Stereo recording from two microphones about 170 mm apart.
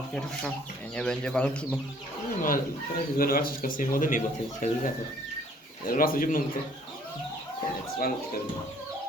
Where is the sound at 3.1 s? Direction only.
60° left (ahead or behind).